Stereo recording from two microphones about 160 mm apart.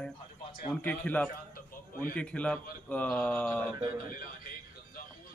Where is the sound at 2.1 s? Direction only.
5° left (ahead or behind).